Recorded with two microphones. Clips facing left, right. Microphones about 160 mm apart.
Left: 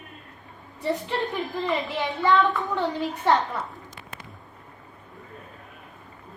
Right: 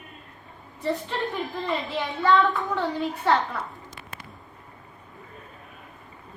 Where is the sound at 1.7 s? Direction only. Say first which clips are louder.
Left 2 dB; 20° left (ahead or behind).